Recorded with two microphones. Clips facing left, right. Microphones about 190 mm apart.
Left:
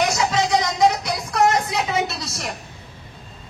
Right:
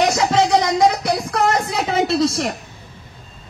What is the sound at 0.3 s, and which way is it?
Music, 60° right (ahead or behind).